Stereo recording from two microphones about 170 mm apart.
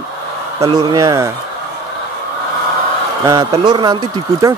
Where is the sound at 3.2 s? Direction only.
25° right (ahead or behind).